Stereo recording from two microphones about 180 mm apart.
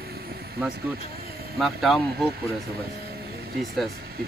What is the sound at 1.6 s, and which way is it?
Speech, centre (ahead or behind).